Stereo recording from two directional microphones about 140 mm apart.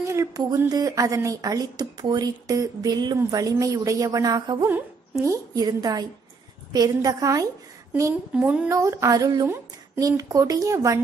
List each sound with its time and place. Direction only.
0.1 s a woman's voice: 25° right (ahead or behind)
8.6 s a woman's voice: 20° right (ahead or behind)